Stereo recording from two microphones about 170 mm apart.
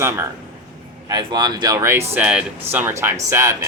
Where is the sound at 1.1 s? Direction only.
25° right (ahead or behind).